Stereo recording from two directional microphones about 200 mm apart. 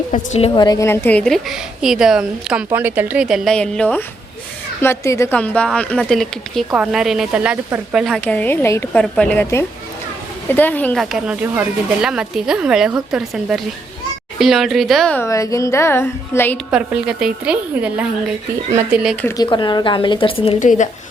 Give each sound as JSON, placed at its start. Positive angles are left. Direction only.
{"t": 0.3, "sound": "a woman's voice", "side_deg": 25}
{"t": 16.7, "sound": "a woman's voice", "side_deg": -5}
{"t": 19.2, "sound": "a woman's voice", "side_deg": 20}